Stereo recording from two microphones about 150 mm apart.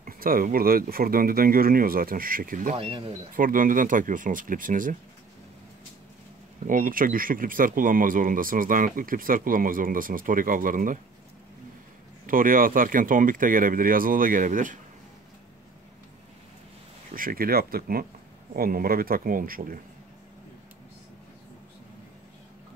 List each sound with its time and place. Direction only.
0.0 s speech: 70° right (ahead or behind)
2.7 s speech: 35° right (ahead or behind)
3.3 s speech: 70° right (ahead or behind)
6.7 s speech: 65° right (ahead or behind)
12.3 s speech: 70° right (ahead or behind)
17.1 s speech: 70° right (ahead or behind)